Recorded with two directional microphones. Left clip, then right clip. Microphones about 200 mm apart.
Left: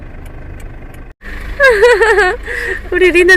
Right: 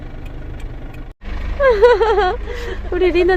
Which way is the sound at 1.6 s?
15° left (ahead or behind).